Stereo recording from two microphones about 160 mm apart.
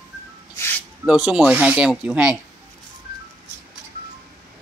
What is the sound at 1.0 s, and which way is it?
Speech, 5° right (ahead or behind).